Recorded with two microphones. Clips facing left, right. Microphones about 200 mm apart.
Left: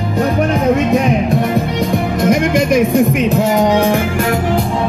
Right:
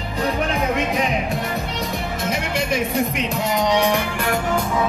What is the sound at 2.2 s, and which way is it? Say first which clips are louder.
Music: left 12 dB; 55° left (ahead or behind).